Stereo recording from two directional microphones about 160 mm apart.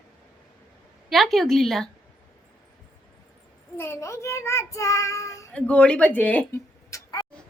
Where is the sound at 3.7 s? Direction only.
15° left (ahead or behind).